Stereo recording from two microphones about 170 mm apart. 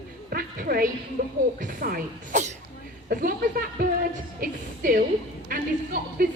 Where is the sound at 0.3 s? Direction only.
60° right (ahead or behind).